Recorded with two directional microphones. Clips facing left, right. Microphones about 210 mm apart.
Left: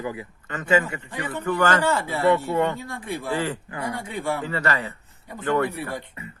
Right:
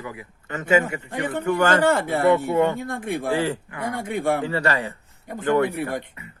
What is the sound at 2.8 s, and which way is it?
Speech, 50° right (ahead or behind).